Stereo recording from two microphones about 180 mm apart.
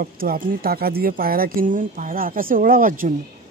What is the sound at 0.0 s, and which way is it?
Speech, 55° right (ahead or behind).